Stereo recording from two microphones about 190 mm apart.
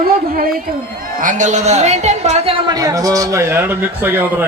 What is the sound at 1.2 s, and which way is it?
A woman's voice, 40° right (ahead or behind).